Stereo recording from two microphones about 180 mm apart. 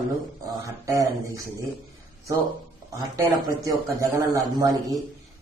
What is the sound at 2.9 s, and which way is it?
A man's voice, 15° right (ahead or behind).